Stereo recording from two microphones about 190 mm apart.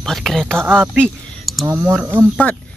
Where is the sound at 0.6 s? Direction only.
10° right (ahead or behind).